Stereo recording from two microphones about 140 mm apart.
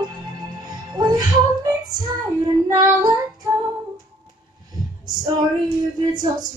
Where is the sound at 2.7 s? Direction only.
25° right (ahead or behind).